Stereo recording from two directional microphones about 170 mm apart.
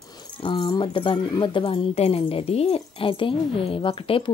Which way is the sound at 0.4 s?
30° left (ahead or behind).